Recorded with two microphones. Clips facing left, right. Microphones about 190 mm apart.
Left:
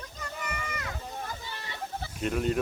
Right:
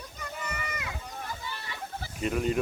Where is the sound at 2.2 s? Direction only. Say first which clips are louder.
Even; centre (ahead or behind).